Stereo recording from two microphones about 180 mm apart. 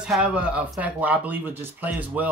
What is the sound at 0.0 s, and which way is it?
Speech, 5° right (ahead or behind).